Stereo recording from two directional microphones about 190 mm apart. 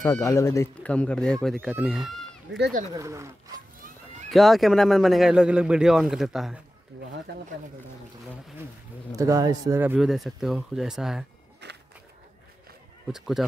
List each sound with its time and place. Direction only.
0.0 s speech: 15° left (ahead or behind); by 2.0 s centre (ahead or behind)
2.5 s speech: 70° right (ahead or behind)
2.9 s speech: 15° right (ahead or behind)
4.3 s speech: centre (ahead or behind)
9.1 s speech: 15° right (ahead or behind); by 11.2 s centre (ahead or behind)
11.6 s a sound: 65° right (ahead or behind)